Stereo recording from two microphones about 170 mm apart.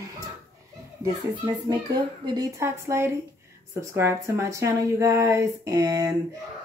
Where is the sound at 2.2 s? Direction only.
20° right (ahead or behind).